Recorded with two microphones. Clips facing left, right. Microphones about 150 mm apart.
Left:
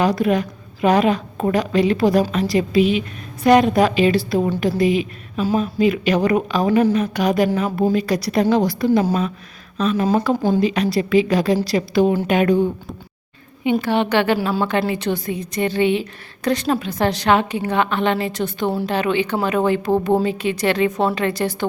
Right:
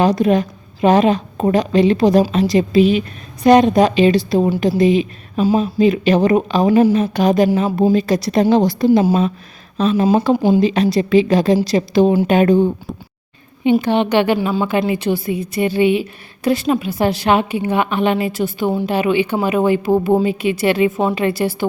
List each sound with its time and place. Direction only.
0.0 s a woman's voice: 25° right (ahead or behind)
10.3 s a woman's voice: 10° right (ahead or behind)
10.6 s a woman's voice: 25° right (ahead or behind)
13.8 s a woman's voice: 20° right (ahead or behind); by 18.9 s centre (ahead or behind)
18.9 s a woman's voice: 10° right (ahead or behind)